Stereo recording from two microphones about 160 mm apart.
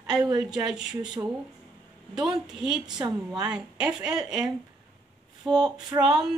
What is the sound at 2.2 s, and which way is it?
Speech, 5° right (ahead or behind).